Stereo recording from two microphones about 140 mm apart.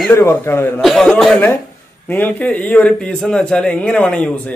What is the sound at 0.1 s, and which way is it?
Speech, 15° left (ahead or behind).